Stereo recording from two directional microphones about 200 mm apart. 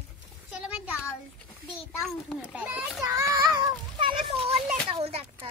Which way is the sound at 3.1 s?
15° right (ahead or behind).